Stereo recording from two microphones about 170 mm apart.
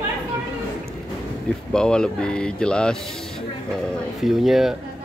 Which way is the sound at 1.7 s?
5° left (ahead or behind).